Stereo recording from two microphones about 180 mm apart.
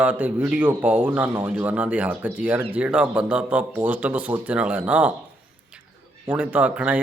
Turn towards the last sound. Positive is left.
turn(degrees=-10)  # may be behind; listen again after turning